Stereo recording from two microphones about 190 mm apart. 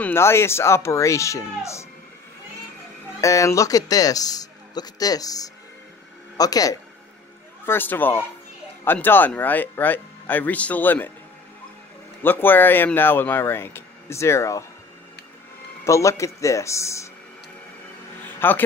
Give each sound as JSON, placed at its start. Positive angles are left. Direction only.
{"t": 0.0, "sound": "speech", "side_deg": 15}
{"t": 3.2, "sound": "speech", "side_deg": 15}
{"t": 12.2, "sound": "speech", "side_deg": 10}
{"t": 15.8, "sound": "speech", "side_deg": 15}
{"t": 18.2, "sound": "music", "side_deg": 10}